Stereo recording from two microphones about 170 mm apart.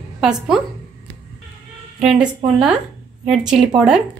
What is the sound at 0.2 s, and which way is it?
Speech, 5° right (ahead or behind).